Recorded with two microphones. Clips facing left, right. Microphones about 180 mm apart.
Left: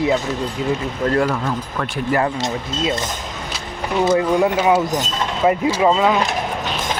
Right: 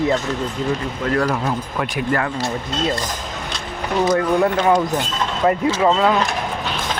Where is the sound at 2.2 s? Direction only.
25° left (ahead or behind).